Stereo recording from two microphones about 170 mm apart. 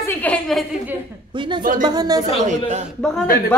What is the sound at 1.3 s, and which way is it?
Speech, 30° right (ahead or behind).